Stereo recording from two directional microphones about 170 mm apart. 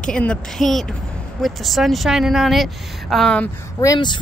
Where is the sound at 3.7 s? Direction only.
20° left (ahead or behind).